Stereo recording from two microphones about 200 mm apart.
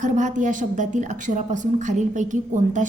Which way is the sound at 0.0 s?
40° right (ahead or behind).